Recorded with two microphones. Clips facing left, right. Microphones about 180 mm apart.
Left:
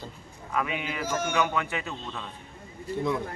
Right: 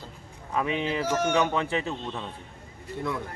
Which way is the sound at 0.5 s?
30° right (ahead or behind).